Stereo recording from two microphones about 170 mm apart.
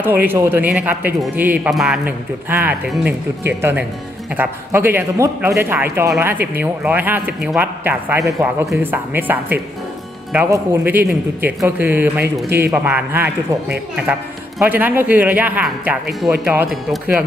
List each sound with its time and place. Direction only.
0.0 s speech: 10° right (ahead or behind)
14.6 s speech: 10° right (ahead or behind)